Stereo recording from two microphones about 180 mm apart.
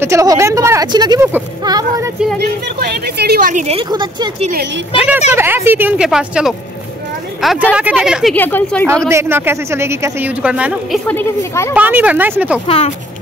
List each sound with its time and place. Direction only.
0.0 s a woman's voice: 15° right (ahead or behind)
2.4 s a woman's voice: 65° right (ahead or behind)
3.6 s a woman's voice: 30° right (ahead or behind)
4.4 s speech: 50° right (ahead or behind)
4.9 s speech: 5° right (ahead or behind)
7.7 s speech: 5° right (ahead or behind)
8.4 s speech: 10° left (ahead or behind)
9.1 s speech: 15° right (ahead or behind)
11.1 s speech: 15° left (ahead or behind)
11.7 s speech: 10° right (ahead or behind)
12.6 s speech: 30° left (ahead or behind)